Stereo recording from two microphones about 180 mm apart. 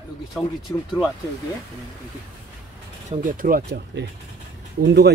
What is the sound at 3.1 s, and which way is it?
Speech, 45° right (ahead or behind).